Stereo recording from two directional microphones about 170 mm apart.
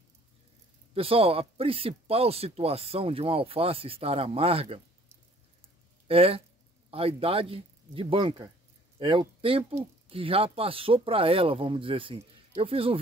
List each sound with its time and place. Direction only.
0.9 s speech: 35° right (ahead or behind)
6.0 s speech: 35° right (ahead or behind)